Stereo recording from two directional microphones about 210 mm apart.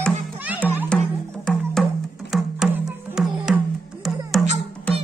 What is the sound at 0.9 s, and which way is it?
Music, 5° left (ahead or behind).